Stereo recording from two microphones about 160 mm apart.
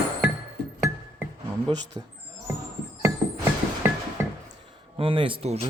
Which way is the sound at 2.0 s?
20° right (ahead or behind).